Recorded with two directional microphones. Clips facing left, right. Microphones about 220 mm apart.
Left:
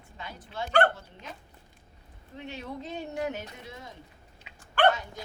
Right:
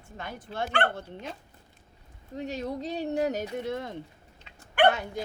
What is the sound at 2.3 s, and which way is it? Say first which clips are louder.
Speech: right 6 dB; 40° right (ahead or behind).